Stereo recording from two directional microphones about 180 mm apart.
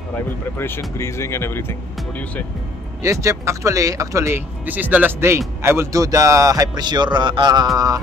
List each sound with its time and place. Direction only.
0.1 s speech: 15° left (ahead or behind)
3.0 s a man's voice: 15° right (ahead or behind)